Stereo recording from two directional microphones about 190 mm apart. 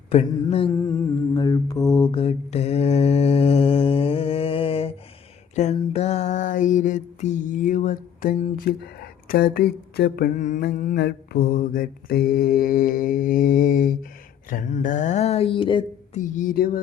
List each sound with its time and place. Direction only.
0.4 s mantra: 30° left (ahead or behind)
0.7 s mantra: 15° left (ahead or behind)
5.5 s a sound: 35° left (ahead or behind)
8.6 s speech: 55° left (ahead or behind)
10.6 s mantra: 55° left (ahead or behind)
14.5 s speech: 40° left (ahead or behind)
16.1 s mantra: 40° left (ahead or behind)